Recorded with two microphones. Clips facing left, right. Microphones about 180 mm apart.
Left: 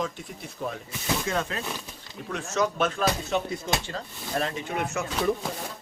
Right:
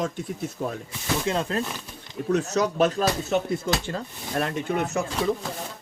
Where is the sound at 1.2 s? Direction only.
30° right (ahead or behind); by 4.7 s 60° right (ahead or behind).